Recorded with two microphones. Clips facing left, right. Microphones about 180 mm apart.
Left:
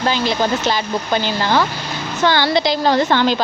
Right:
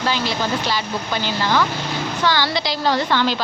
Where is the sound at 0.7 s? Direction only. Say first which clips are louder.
Left 4 dB; 50° left (ahead or behind).